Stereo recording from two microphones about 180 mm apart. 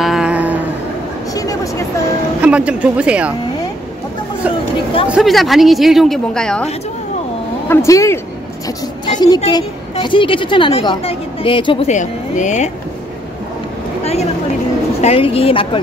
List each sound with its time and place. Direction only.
0.0 s a sound: 5° right (ahead or behind)
1.3 s vehicle: 20° left (ahead or behind)
2.4 s speech: 5° right (ahead or behind)
5.1 s speech: centre (ahead or behind)
7.6 s speech: 15° left (ahead or behind)
11.9 s speech: 45° left (ahead or behind)
14.0 s speech: 35° left (ahead or behind)